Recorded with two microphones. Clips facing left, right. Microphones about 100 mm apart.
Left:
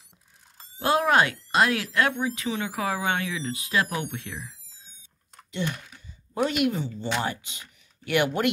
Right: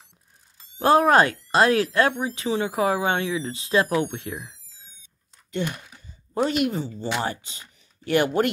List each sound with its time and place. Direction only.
0.7 s speech: 40° right (ahead or behind)
5.9 s speech: 35° right (ahead or behind)